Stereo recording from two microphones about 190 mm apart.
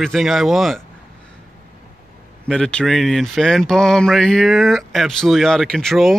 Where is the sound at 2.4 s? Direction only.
5° left (ahead or behind).